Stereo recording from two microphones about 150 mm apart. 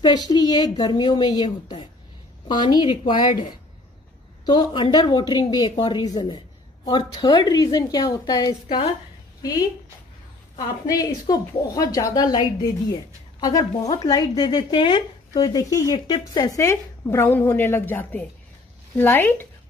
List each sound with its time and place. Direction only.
0.0 s a woman's voice: 25° left (ahead or behind)
4.5 s a woman's voice: 30° left (ahead or behind)
10.9 s speech: 25° left (ahead or behind)